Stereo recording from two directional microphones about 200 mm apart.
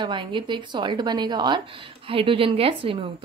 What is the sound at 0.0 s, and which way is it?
A woman's voice, 25° right (ahead or behind).